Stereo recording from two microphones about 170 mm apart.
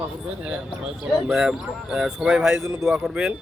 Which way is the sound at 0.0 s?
5° right (ahead or behind).